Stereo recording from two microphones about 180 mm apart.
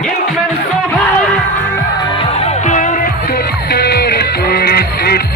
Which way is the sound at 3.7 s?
60° left (ahead or behind).